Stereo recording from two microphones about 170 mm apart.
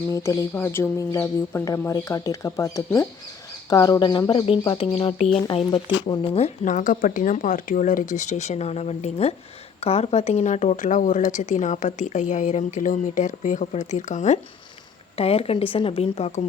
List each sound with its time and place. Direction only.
0.1 s a woman's voice: 20° left (ahead or behind); by 14.3 s 45° left (ahead or behind)
15.1 s a woman's voice: 35° left (ahead or behind)